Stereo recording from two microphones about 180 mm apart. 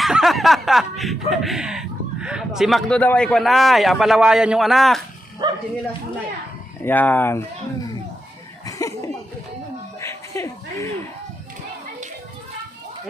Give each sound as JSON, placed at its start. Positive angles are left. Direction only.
{"t": 0.0, "sound": "speech", "side_deg": 0}
{"t": 5.4, "sound": "dog", "side_deg": -20}
{"t": 6.8, "sound": "speech", "side_deg": 10}
{"t": 8.6, "sound": "chuckle", "side_deg": 20}
{"t": 10.0, "sound": "music", "side_deg": 15}